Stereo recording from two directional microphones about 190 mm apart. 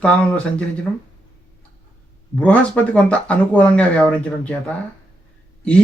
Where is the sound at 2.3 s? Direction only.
5° left (ahead or behind).